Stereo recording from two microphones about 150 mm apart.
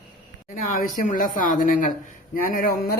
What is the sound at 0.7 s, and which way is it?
Speech, 65° left (ahead or behind).